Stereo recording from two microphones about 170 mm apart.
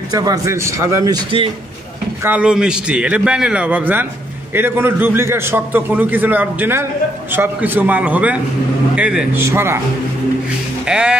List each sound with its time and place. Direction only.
0.1 s a man's voice: 20° right (ahead or behind)
2.2 s a man's voice: 5° right (ahead or behind)
10.9 s speech: 5° right (ahead or behind)